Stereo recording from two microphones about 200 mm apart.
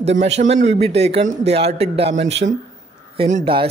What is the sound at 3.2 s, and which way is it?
Speech, 30° right (ahead or behind).